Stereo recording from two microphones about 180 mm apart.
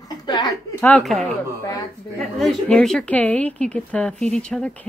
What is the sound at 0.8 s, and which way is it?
A woman's voice, 5° left (ahead or behind).